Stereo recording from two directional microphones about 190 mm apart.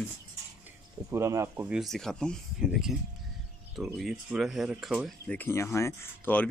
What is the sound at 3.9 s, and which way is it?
Speech, centre (ahead or behind).